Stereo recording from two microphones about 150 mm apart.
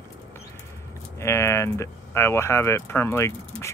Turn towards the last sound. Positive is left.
turn(degrees=20)  # may be behind; listen again after turning